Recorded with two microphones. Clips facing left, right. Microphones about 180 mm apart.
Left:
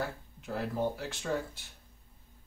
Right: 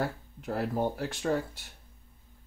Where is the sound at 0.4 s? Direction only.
50° right (ahead or behind).